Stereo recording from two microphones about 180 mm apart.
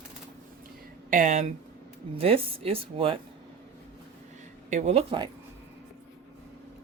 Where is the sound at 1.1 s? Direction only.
40° right (ahead or behind).